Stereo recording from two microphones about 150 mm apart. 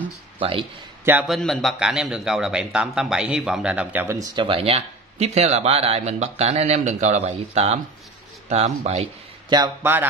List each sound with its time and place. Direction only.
0.4 s a man's voice: 35° right (ahead or behind)
1.2 s a man's voice: centre (ahead or behind); by 4.3 s 15° right (ahead or behind)
4.4 s speech: 35° right (ahead or behind)